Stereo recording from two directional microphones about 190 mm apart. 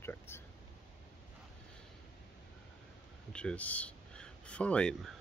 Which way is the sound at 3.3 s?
5° left (ahead or behind).